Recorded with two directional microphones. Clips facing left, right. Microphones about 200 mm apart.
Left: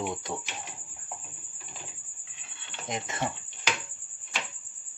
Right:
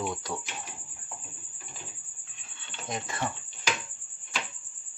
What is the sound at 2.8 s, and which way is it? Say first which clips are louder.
Speech: left 1 dB; 20° left (ahead or behind).